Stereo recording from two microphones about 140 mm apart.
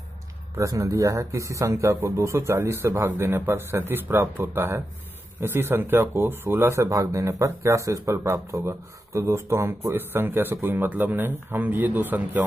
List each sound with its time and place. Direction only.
0.6 s a man's voice: 25° right (ahead or behind)